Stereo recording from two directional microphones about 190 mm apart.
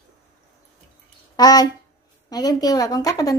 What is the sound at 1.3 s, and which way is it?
A woman's voice, 20° left (ahead or behind).